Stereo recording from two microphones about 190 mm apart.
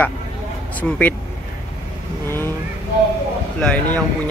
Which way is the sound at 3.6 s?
5° left (ahead or behind).